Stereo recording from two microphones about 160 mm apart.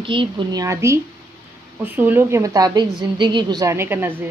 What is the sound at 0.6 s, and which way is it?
A woman's voice, 20° right (ahead or behind).